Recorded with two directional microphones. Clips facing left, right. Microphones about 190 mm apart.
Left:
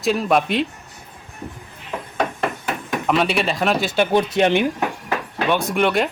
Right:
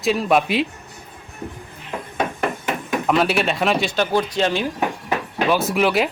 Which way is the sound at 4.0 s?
20° left (ahead or behind).